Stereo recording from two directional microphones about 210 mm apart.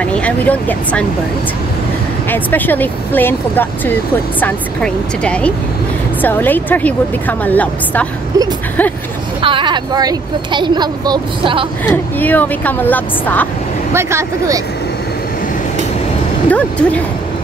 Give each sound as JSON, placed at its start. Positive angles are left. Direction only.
{"t": 0.0, "sound": "speech", "side_deg": 5}
{"t": 2.2, "sound": "speech", "side_deg": 10}
{"t": 9.4, "sound": "speech", "side_deg": -25}
{"t": 11.9, "sound": "speech", "side_deg": 10}
{"t": 13.9, "sound": "speech", "side_deg": -15}
{"t": 16.4, "sound": "speech", "side_deg": 5}